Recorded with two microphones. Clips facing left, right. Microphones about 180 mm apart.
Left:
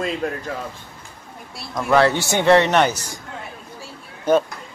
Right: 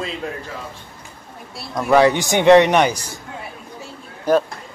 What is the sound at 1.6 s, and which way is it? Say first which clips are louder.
Speech: right 2 dB; centre (ahead or behind).